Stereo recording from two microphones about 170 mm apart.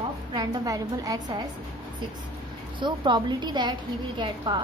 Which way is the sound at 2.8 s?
25° right (ahead or behind).